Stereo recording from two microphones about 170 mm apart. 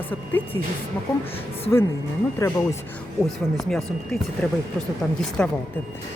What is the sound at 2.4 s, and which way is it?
Speech, 15° left (ahead or behind).